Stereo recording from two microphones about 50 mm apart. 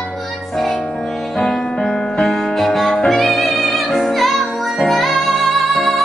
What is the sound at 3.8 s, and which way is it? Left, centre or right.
Music, centre.